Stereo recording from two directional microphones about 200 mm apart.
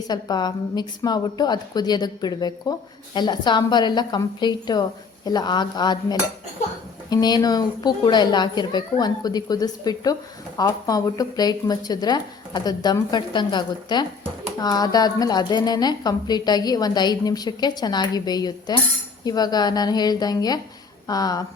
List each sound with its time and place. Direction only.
0.1 s a woman's voice: 20° left (ahead or behind)